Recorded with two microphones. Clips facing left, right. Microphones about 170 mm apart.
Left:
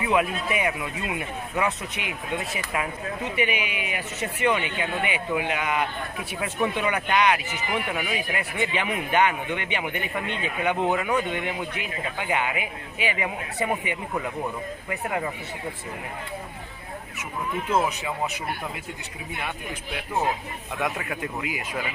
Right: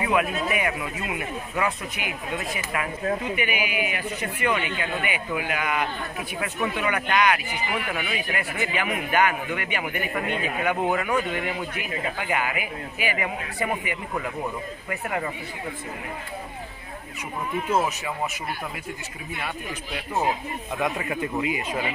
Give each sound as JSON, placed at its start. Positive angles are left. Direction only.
{"t": 0.0, "sound": "speech", "side_deg": 25}
{"t": 20.8, "sound": "a man's voice", "side_deg": 0}